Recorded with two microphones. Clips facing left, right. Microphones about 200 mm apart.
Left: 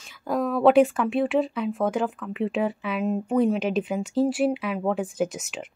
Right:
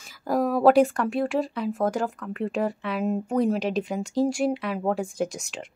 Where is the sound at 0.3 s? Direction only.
5° right (ahead or behind).